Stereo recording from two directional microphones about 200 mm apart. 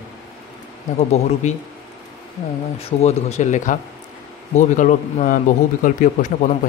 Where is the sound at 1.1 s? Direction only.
35° left (ahead or behind).